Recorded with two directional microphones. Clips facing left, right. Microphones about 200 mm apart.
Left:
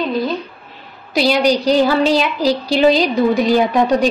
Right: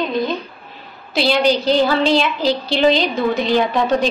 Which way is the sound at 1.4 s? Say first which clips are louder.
Left 1 dB; 40° left (ahead or behind).